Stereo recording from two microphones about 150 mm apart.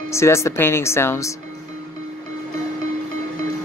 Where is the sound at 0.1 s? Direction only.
20° left (ahead or behind).